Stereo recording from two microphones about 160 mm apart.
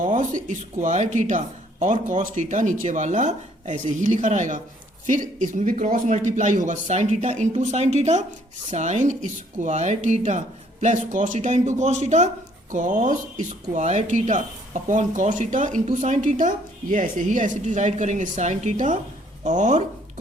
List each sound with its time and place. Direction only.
0.0 s speech: 55° right (ahead or behind)